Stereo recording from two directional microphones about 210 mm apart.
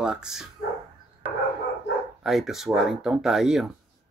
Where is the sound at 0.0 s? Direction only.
5° right (ahead or behind).